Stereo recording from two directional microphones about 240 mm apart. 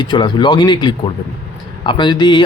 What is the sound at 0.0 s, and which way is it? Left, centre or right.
Speech, centre.